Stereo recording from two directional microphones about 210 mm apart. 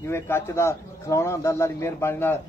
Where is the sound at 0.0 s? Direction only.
10° left (ahead or behind).